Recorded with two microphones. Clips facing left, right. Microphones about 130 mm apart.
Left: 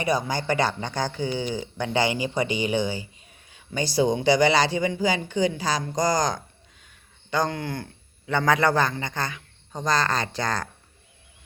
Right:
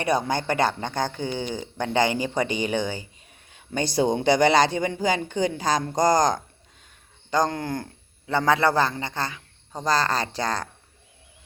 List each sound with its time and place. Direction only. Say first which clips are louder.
0.0 s speech: right 1 dB; 60° right (ahead or behind)
6.8 s a sound: right 1 dB; 40° right (ahead or behind)
8.3 s a man's voice: even; 30° right (ahead or behind)